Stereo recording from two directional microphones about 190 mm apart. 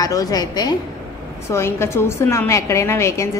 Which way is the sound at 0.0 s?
20° left (ahead or behind).